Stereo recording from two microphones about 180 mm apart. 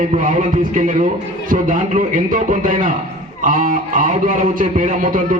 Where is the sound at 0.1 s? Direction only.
45° right (ahead or behind).